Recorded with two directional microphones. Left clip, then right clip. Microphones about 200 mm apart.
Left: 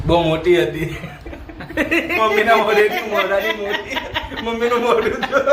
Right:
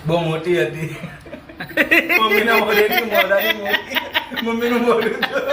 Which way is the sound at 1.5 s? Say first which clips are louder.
Right 4 dB; 10° right (ahead or behind).